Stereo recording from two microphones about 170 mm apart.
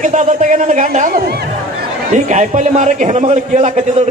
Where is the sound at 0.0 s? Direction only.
50° right (ahead or behind).